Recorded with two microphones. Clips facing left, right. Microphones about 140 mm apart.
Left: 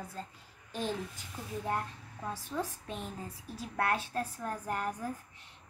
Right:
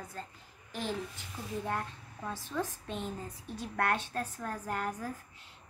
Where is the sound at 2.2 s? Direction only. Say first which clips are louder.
Even; 10° left (ahead or behind).